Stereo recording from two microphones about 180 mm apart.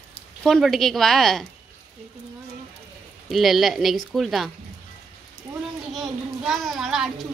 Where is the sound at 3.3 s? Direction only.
Centre (ahead or behind).